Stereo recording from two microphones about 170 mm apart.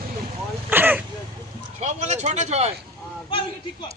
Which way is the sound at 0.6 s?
10° right (ahead or behind).